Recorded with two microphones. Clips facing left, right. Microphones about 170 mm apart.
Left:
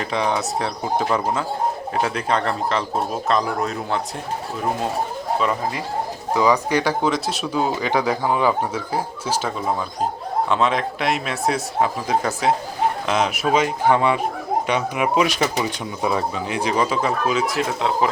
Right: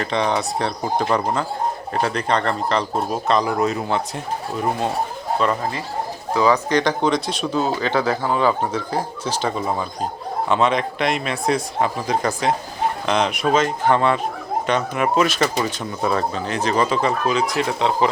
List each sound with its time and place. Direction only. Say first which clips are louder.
0.0 s speech: right 1 dB; 5° left (ahead or behind)
5.4 s speech: right 3 dB; 5° left (ahead or behind)
10.5 s speech: right 3 dB; centre (ahead or behind)